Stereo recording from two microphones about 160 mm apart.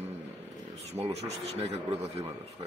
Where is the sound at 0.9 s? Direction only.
40° right (ahead or behind).